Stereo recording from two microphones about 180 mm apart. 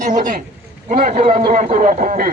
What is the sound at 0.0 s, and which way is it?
A man's voice, 45° right (ahead or behind).